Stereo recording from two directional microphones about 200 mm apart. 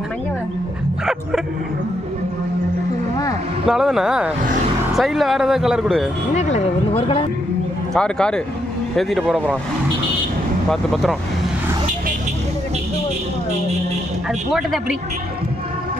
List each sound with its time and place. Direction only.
3.6 s speech: centre (ahead or behind)
6.3 s speech: 35° left (ahead or behind)
7.9 s speech: 5° left (ahead or behind)
10.7 s speech: centre (ahead or behind)
14.5 s speech: centre (ahead or behind)